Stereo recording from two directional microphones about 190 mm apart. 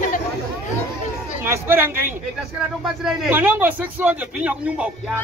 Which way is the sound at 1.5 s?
10° right (ahead or behind).